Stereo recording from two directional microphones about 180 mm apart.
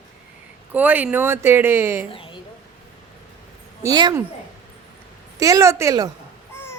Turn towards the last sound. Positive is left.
turn(degrees=-20)  # may be behind; listen again after turning